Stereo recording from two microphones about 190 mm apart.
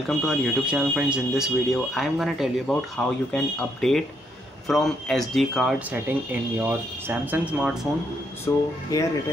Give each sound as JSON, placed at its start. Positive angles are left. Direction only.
{"t": 0.1, "sound": "speech", "side_deg": 0}
{"t": 8.5, "sound": "speech", "side_deg": 15}